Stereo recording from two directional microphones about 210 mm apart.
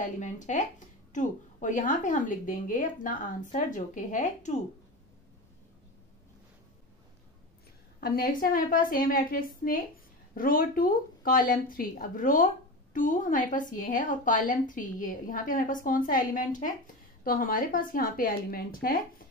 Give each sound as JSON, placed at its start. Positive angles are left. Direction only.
{"t": 0.2, "sound": "a woman's voice", "side_deg": 35}
{"t": 8.0, "sound": "a woman's voice", "side_deg": 45}